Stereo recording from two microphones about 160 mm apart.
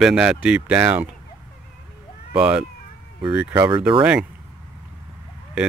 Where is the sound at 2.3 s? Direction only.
5° right (ahead or behind).